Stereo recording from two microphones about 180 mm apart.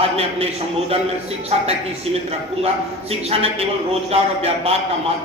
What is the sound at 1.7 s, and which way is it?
Speech, 35° right (ahead or behind).